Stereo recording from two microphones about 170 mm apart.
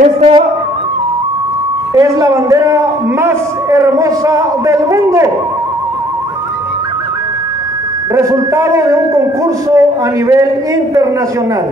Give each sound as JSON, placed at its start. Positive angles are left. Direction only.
{"t": 0.0, "sound": "speech", "side_deg": -35}
{"t": 2.0, "sound": "a man's voice", "side_deg": -20}
{"t": 8.1, "sound": "a man's voice", "side_deg": -20}